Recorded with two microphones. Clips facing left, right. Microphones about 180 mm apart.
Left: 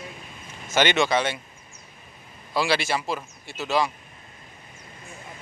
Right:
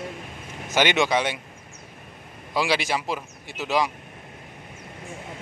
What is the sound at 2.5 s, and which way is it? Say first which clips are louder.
A man's voice: even; 15° right (ahead or behind).